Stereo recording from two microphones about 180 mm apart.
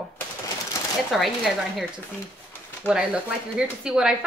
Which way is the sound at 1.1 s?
Centre (ahead or behind).